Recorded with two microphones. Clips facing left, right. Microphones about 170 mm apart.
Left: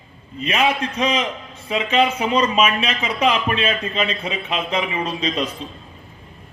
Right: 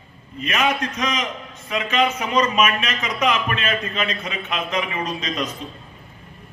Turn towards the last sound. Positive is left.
turn(degrees=30)  # may be behind; listen again after turning